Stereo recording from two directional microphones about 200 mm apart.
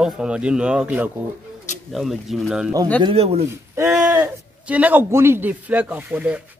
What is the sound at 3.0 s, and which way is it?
Speech, 30° right (ahead or behind).